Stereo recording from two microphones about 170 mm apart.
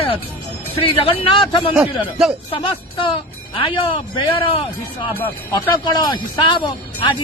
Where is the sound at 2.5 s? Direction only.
30° left (ahead or behind).